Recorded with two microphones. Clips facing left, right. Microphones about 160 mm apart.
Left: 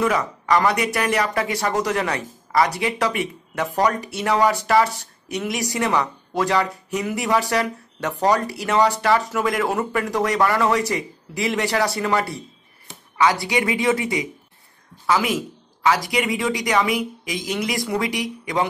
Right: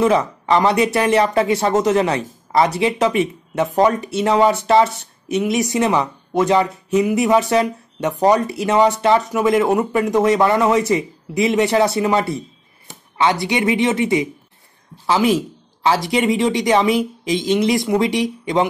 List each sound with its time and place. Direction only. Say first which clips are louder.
0.0 s speech: right 5 dB; 25° right (ahead or behind)